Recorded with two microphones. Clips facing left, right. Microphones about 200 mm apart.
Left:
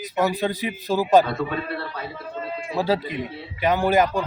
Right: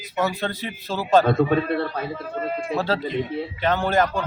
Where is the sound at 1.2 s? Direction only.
50° right (ahead or behind).